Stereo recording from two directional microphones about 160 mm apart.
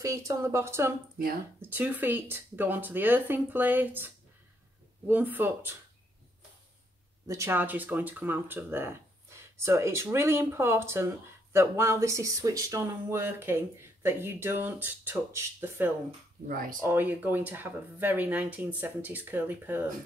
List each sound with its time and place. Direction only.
0.0 s speech: 20° right (ahead or behind)
1.1 s speech: 70° right (ahead or behind)
1.7 s speech: 10° right (ahead or behind)
7.2 s speech: 15° right (ahead or behind)
16.4 s speech: 60° right (ahead or behind)
16.8 s speech: 15° right (ahead or behind)